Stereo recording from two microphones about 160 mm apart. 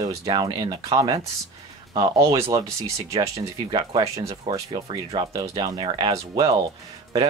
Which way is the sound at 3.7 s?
25° right (ahead or behind).